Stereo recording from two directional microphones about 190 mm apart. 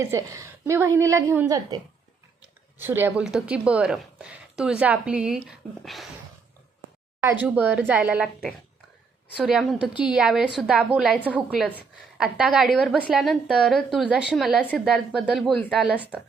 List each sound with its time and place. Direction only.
0.0 s a woman's voice: 15° right (ahead or behind); by 6.1 s centre (ahead or behind)
7.2 s a woman's voice: 10° right (ahead or behind)